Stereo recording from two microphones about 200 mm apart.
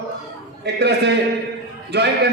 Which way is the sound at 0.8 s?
55° right (ahead or behind).